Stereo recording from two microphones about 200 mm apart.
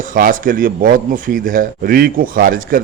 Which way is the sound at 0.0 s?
45° right (ahead or behind).